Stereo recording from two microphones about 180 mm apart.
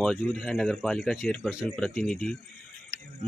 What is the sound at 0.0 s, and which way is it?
Speech, centre (ahead or behind).